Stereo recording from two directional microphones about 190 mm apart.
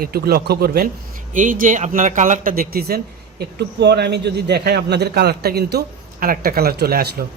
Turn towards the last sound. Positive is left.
turn(degrees=-55)  # may be behind; listen again after turning